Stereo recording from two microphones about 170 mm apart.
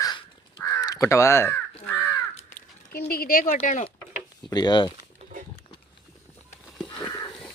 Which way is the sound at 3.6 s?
40° left (ahead or behind).